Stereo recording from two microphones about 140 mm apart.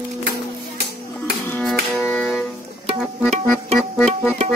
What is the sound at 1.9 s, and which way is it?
Music, centre (ahead or behind).